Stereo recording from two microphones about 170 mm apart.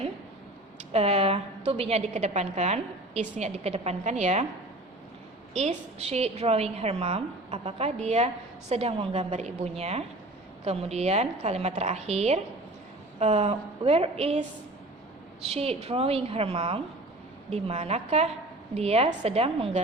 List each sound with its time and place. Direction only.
0.9 s a woman's voice: 35° right (ahead or behind)
5.5 s a woman's voice: 40° right (ahead or behind)